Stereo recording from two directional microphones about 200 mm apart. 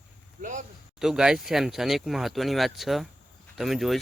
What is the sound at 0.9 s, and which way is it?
Speech, 5° right (ahead or behind).